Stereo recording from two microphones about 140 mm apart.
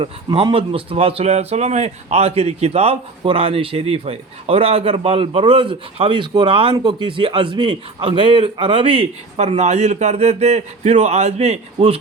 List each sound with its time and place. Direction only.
0.0 s a man's voice: 35° right (ahead or behind)